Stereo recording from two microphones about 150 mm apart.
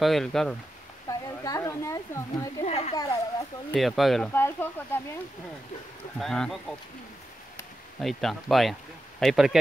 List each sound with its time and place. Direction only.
0.0 s speech: centre (ahead or behind)
1.0 s speech: 20° left (ahead or behind)
2.6 s speech: 45° left (ahead or behind)
3.0 s speech: 25° left (ahead or behind)
3.7 s speech: centre (ahead or behind)
4.3 s speech: 15° left (ahead or behind)
6.1 s speech: 5° left (ahead or behind)
8.0 s speech: centre (ahead or behind)